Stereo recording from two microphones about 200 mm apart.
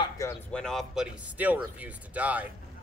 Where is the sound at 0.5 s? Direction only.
Centre (ahead or behind).